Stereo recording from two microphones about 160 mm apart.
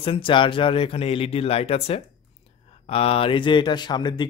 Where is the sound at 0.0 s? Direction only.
35° left (ahead or behind).